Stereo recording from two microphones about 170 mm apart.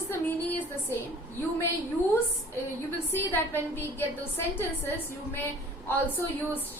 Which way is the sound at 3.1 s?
15° left (ahead or behind).